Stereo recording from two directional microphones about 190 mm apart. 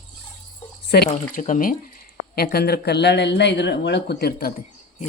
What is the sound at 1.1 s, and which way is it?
Speech, 40° left (ahead or behind).